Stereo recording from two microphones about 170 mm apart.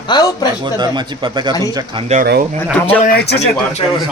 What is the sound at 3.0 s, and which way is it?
Speech, 70° left (ahead or behind).